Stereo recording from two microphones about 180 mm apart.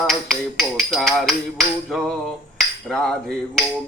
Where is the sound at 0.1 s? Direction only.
Centre (ahead or behind).